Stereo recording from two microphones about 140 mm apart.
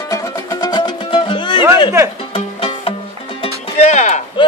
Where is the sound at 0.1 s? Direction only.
25° left (ahead or behind); by 2.9 s 40° left (ahead or behind).